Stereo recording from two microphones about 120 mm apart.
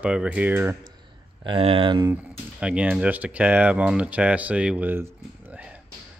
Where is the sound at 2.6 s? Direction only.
10° right (ahead or behind).